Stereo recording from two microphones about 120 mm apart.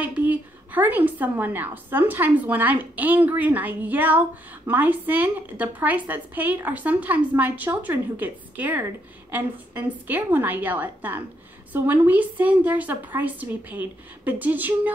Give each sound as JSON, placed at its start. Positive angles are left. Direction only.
{"t": 0.0, "sound": "a woman's voice", "side_deg": -15}